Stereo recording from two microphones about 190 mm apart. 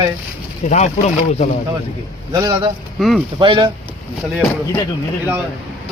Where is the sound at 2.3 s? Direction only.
25° right (ahead or behind).